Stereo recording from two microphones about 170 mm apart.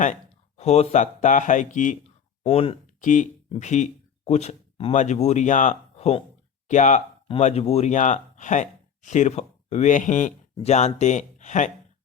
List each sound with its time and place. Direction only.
0.0 s speech: 45° left (ahead or behind)
2.4 s speech: 35° left (ahead or behind)